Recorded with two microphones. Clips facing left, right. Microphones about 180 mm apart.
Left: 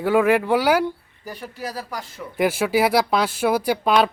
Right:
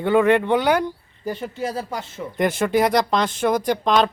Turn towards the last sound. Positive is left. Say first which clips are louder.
# even
turn(degrees=10)  # may be behind; listen again after turning